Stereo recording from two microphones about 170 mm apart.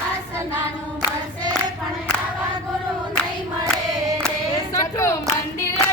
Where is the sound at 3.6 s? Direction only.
20° right (ahead or behind).